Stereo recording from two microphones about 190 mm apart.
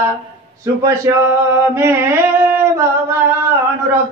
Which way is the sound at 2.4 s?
10° right (ahead or behind).